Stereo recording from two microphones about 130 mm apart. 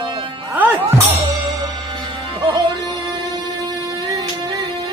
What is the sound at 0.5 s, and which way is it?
Music, 15° right (ahead or behind).